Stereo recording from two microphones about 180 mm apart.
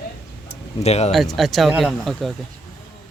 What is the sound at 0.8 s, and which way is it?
Speech, 35° left (ahead or behind).